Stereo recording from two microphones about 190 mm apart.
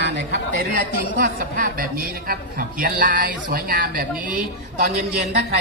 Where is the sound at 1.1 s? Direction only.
45° right (ahead or behind).